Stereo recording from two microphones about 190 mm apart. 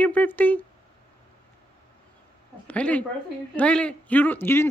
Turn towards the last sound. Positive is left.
turn(degrees=10)  # may be behind; listen again after turning